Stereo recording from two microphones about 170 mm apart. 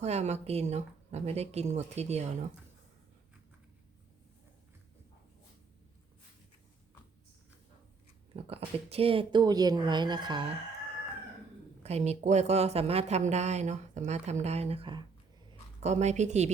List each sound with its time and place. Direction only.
0.0 s a woman's voice: 40° right (ahead or behind)
8.3 s speech: 35° right (ahead or behind)
11.8 s a woman's voice: 40° right (ahead or behind)
15.8 s a woman's voice: 40° right (ahead or behind)